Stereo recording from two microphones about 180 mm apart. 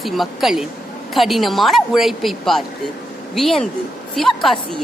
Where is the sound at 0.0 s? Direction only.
Centre (ahead or behind).